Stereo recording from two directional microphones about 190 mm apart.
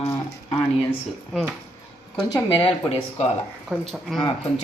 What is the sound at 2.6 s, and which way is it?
Speech, 30° left (ahead or behind).